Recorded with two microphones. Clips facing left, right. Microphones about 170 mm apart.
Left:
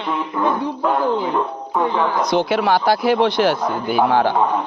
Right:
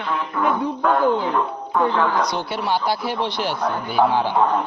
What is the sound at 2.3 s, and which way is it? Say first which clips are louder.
Speech: left 7 dB; 90° left.